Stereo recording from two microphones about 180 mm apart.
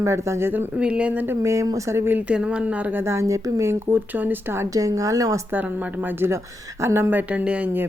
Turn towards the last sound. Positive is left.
turn(degrees=-10)  # may be behind; listen again after turning